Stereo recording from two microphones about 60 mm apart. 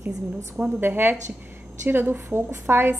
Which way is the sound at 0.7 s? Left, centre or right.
Right.